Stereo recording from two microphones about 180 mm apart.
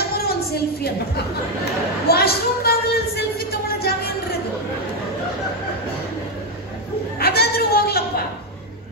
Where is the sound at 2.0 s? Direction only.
60° left (ahead or behind).